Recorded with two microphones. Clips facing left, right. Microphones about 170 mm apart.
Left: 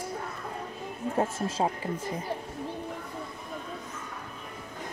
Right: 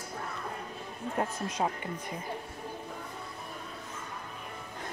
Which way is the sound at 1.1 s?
25° left (ahead or behind).